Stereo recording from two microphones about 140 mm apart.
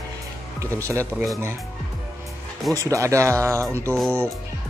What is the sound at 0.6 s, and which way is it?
Speech, 20° right (ahead or behind).